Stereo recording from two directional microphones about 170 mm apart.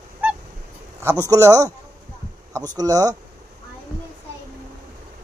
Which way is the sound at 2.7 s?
20° right (ahead or behind).